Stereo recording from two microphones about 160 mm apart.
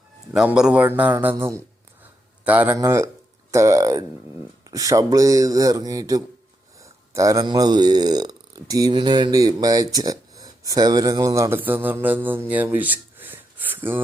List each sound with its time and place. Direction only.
0.3 s a man's voice: 5° right (ahead or behind)